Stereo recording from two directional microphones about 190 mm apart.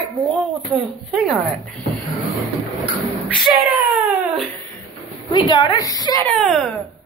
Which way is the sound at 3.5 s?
10° right (ahead or behind).